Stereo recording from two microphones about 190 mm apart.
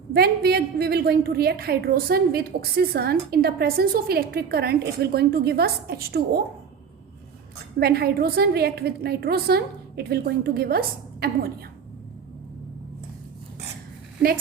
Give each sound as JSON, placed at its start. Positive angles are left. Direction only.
{"t": 0.1, "sound": "a woman's voice", "side_deg": -55}
{"t": 7.8, "sound": "a woman's voice", "side_deg": -55}